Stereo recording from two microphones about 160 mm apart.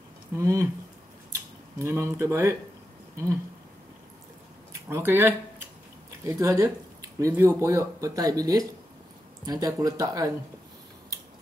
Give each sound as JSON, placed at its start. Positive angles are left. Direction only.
{"t": 0.4, "sound": "speech", "side_deg": -20}
{"t": 4.8, "sound": "speech", "side_deg": -15}
{"t": 11.1, "sound": "scissors", "side_deg": -20}